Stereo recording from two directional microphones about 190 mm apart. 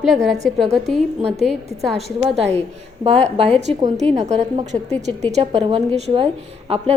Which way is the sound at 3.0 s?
35° right (ahead or behind).